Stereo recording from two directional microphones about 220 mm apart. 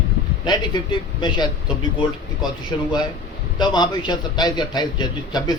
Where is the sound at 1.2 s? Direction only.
20° left (ahead or behind).